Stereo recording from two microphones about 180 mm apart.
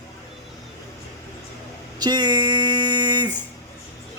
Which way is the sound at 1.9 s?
25° right (ahead or behind).